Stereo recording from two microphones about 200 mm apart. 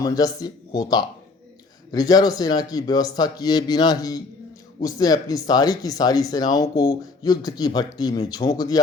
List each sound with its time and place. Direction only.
0.0 s speech: 20° left (ahead or behind)